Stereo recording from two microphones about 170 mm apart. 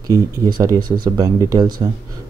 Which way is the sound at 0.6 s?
25° right (ahead or behind).